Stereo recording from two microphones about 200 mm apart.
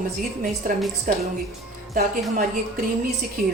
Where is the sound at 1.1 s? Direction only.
40° right (ahead or behind).